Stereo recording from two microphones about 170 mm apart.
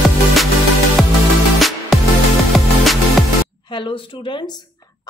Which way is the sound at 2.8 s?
Centre (ahead or behind).